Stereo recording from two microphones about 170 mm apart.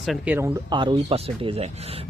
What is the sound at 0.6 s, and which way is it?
Speech, 30° right (ahead or behind).